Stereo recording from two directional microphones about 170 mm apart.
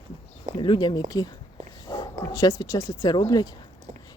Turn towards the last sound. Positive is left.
turn(degrees=25)  # may be behind; listen again after turning